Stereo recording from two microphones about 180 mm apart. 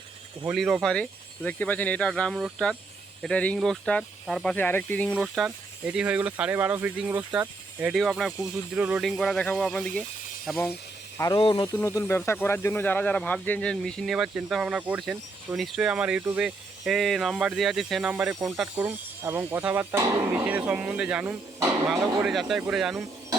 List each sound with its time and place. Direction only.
0.4 s speech: centre (ahead or behind)
11.2 s speech: 20° left (ahead or behind); by 23.0 s centre (ahead or behind)